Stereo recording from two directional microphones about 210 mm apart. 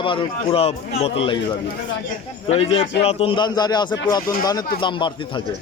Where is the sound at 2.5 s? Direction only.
25° left (ahead or behind).